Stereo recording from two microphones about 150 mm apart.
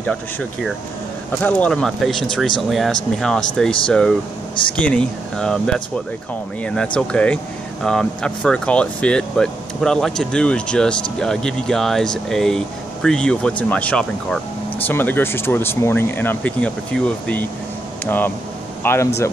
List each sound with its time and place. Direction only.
0.0 s speech: 5° left (ahead or behind)
4.7 s speech: 5° left (ahead or behind)